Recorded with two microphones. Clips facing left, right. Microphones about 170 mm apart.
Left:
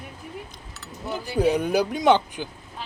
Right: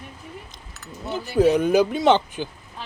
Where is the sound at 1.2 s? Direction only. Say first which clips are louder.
Right 4 dB; 10° left (ahead or behind).